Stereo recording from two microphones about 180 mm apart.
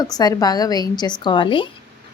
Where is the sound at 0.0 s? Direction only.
20° left (ahead or behind).